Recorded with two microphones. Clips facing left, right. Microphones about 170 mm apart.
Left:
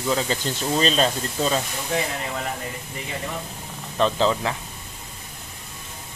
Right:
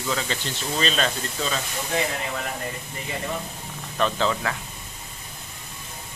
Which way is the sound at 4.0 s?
30° left (ahead or behind).